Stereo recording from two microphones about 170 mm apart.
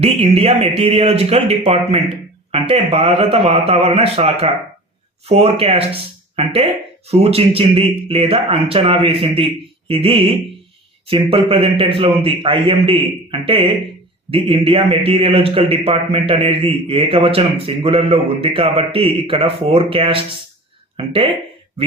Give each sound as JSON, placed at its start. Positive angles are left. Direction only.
{"t": 0.0, "sound": "a man's voice", "side_deg": -35}